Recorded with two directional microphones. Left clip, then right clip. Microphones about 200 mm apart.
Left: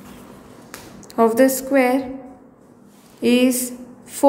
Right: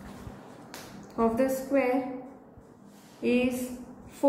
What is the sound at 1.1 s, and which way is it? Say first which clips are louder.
Speech: left 11 dB; 50° left (ahead or behind).